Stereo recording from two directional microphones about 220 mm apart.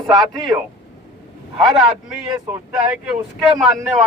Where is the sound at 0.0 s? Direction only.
Centre (ahead or behind).